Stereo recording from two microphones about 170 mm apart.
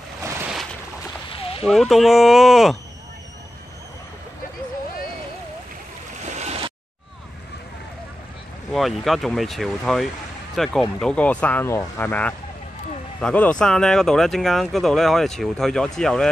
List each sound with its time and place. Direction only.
1.6 s speech: centre (ahead or behind)
6.2 s boat: 40° right (ahead or behind)
8.7 s speech: centre (ahead or behind)